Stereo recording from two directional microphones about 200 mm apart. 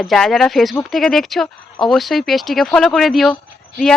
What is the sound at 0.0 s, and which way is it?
Speech, centre (ahead or behind).